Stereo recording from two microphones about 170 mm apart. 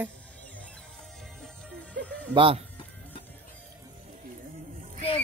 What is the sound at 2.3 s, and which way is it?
Speech, 30° right (ahead or behind).